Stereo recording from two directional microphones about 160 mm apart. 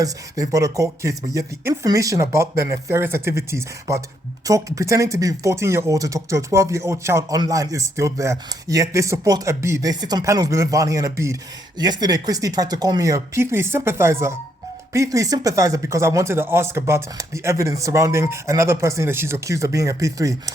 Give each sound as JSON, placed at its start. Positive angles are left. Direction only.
{"t": 0.0, "sound": "speech", "side_deg": -20}